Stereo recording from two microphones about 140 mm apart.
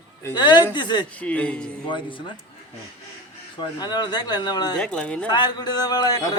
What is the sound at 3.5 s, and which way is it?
A man's voice, 30° left (ahead or behind).